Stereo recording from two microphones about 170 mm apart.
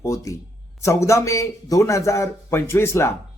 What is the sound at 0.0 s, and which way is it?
A man's voice, 20° left (ahead or behind).